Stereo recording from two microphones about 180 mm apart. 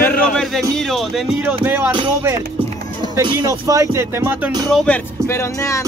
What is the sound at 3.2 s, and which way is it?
Speech, 20° right (ahead or behind).